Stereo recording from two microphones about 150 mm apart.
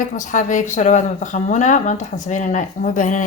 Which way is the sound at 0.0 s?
55° left (ahead or behind).